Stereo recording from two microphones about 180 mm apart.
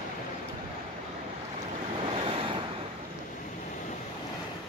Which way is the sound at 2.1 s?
30° right (ahead or behind).